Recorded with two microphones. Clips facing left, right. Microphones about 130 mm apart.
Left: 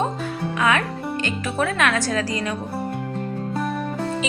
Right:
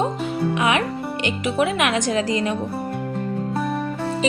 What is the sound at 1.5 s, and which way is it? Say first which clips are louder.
Music: right 1 dB; 20° right (ahead or behind).